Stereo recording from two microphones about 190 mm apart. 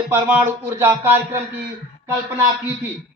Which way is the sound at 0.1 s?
10° right (ahead or behind).